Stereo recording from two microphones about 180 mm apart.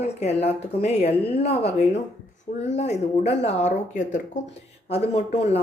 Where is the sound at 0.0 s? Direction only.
35° left (ahead or behind).